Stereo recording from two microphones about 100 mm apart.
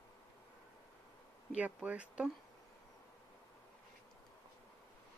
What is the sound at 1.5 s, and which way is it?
Speech, 15° right (ahead or behind).